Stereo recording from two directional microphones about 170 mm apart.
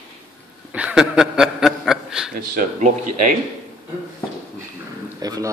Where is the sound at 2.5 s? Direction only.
45° right (ahead or behind).